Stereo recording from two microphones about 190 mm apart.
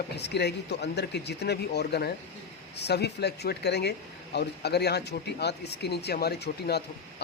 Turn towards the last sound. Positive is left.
turn(degrees=60)  # may be behind; listen again after turning